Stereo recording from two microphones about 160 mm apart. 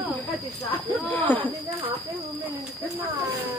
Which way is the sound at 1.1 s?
10° left (ahead or behind).